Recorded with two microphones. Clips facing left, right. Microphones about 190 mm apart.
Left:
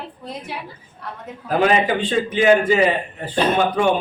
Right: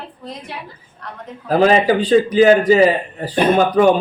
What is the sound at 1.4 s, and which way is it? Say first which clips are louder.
A man's voice: right 4 dB; 35° right (ahead or behind).